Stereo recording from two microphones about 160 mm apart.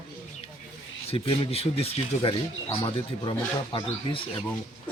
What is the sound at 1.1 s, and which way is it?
Speech, 40° left (ahead or behind).